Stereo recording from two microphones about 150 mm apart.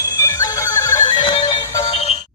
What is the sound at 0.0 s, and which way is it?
Music, 20° left (ahead or behind).